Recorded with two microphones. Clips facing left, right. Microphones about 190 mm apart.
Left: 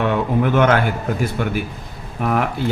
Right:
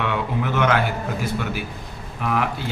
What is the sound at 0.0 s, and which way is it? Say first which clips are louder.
Speech: left 6 dB; 45° left (ahead or behind).